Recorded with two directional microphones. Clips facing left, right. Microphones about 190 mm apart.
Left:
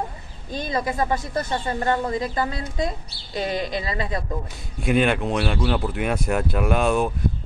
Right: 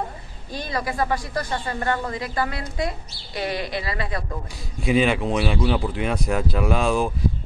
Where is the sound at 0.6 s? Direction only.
20° left (ahead or behind).